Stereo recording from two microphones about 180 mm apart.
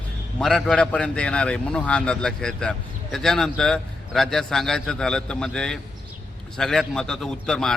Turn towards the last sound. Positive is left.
turn(degrees=5)  # may be behind; listen again after turning